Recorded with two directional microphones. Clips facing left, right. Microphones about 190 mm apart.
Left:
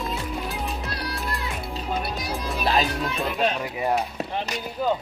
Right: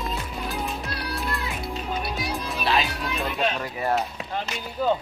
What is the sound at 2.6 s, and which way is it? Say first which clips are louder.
Music: left 2 dB; 40° left (ahead or behind).